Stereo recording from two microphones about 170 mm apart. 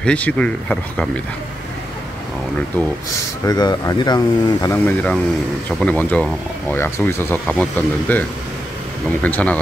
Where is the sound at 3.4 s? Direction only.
25° left (ahead or behind).